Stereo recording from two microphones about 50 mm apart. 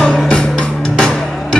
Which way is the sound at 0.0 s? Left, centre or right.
Left.